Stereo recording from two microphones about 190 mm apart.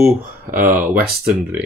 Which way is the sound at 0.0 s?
45° right (ahead or behind).